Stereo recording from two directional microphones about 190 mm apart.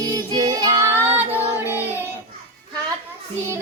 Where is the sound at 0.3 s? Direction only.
25° right (ahead or behind).